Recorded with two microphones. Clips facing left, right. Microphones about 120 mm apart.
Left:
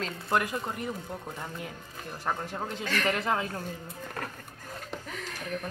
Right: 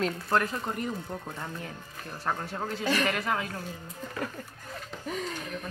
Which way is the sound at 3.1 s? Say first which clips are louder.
Left 1 dB; 25° left (ahead or behind).